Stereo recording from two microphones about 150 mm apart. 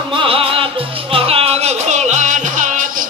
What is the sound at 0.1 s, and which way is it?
Music, 35° right (ahead or behind).